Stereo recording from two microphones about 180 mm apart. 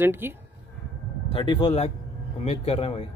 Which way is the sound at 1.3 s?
25° left (ahead or behind).